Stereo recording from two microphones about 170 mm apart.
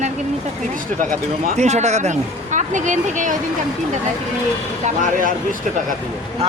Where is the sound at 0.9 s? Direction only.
55° right (ahead or behind).